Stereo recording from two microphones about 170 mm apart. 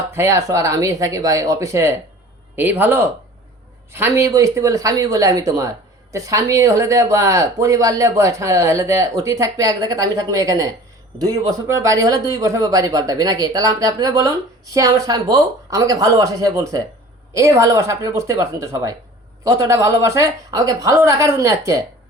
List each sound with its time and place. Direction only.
0.1 s speech: 15° right (ahead or behind)